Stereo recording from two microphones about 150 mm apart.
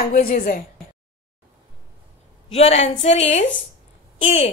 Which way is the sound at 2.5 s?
45° left (ahead or behind).